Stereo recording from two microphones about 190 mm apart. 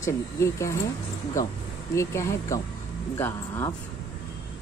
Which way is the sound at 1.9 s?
15° left (ahead or behind).